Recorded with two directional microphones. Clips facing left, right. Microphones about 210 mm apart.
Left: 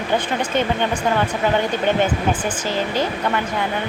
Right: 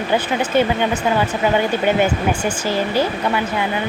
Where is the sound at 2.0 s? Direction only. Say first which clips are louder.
Right 2 dB; 10° right (ahead or behind).